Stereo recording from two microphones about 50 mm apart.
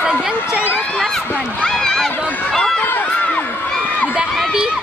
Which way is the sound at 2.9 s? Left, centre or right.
Left.